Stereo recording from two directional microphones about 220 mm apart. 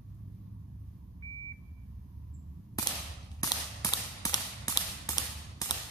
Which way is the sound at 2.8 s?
15° left (ahead or behind).